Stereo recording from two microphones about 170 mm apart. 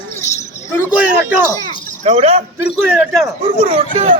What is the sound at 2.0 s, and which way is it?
Speech, 40° right (ahead or behind).